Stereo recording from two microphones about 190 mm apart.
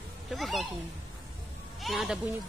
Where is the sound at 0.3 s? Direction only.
Centre (ahead or behind).